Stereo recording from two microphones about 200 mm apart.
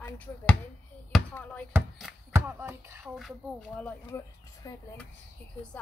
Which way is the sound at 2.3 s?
10° right (ahead or behind).